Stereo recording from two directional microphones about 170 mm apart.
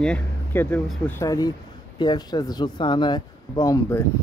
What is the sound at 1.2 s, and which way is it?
Speech, 20° left (ahead or behind).